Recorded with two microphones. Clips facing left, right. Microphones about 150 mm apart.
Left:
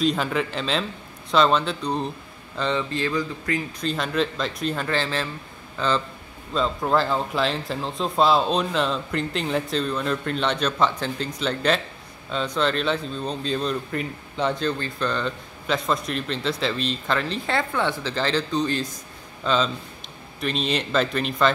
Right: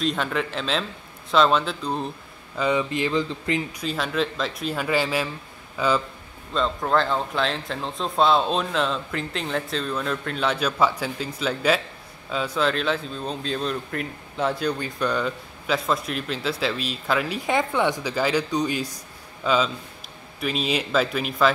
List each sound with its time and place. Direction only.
0.0 s speech: centre (ahead or behind); by 3.6 s 20° right (ahead or behind)
3.8 s speech: centre (ahead or behind)
6.5 s speech: 5° left (ahead or behind)